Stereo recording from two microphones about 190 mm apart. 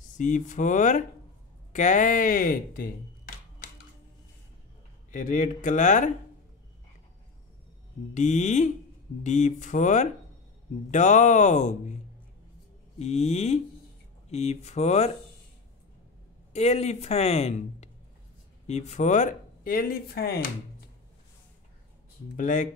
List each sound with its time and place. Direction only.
0.2 s speech: 40° left (ahead or behind)
5.1 s speech: 45° left (ahead or behind)
8.1 s speech: 40° left (ahead or behind)
13.0 s speech: 35° left (ahead or behind)
16.5 s speech: 35° left (ahead or behind); by 20.4 s 55° left (ahead or behind)
22.4 s speech: 45° left (ahead or behind)